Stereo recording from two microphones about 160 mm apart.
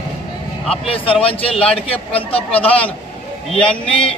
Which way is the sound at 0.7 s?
35° left (ahead or behind).